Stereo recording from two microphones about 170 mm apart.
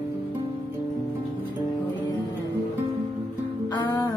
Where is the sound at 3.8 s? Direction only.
20° left (ahead or behind).